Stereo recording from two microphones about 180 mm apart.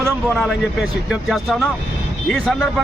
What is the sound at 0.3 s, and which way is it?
A man's voice, centre (ahead or behind).